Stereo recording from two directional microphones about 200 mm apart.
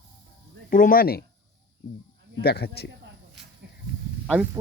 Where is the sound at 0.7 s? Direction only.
40° left (ahead or behind).